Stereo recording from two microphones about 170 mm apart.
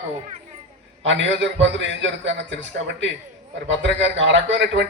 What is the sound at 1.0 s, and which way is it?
A man's voice, 90° right.